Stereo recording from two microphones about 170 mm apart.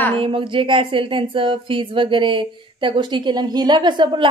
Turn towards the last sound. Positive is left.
turn(degrees=-25)  # may be behind; listen again after turning